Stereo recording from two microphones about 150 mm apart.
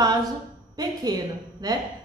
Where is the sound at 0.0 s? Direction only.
25° right (ahead or behind).